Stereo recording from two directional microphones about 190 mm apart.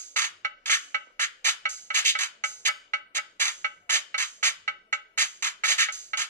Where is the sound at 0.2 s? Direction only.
40° right (ahead or behind).